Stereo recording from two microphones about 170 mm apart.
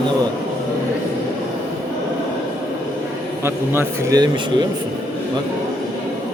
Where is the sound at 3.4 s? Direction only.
15° right (ahead or behind).